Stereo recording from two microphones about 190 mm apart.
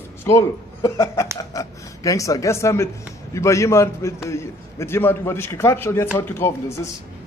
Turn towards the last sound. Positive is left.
turn(degrees=15)  # may be behind; listen again after turning